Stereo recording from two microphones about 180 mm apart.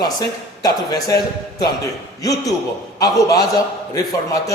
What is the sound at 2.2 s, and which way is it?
A man's voice, 20° left (ahead or behind).